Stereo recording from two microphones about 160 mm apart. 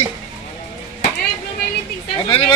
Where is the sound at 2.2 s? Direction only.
35° left (ahead or behind).